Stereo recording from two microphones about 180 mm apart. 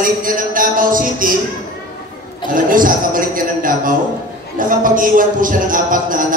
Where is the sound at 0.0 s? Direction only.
50° right (ahead or behind).